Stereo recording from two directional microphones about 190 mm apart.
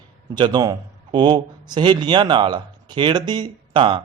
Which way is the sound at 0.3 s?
20° right (ahead or behind).